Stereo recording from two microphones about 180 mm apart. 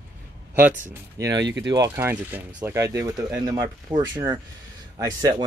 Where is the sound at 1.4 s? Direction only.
80° right.